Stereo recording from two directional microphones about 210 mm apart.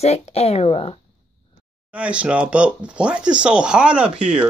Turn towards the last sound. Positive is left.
turn(degrees=-5)  # may be behind; listen again after turning